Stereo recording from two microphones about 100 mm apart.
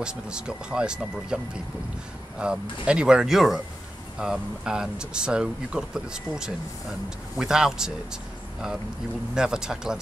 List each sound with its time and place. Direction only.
0.0 s speech: 10° right (ahead or behind)
9.3 s speech: 5° right (ahead or behind)